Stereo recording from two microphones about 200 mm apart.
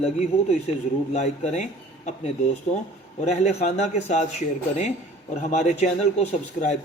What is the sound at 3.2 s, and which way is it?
A man's voice, 35° left (ahead or behind).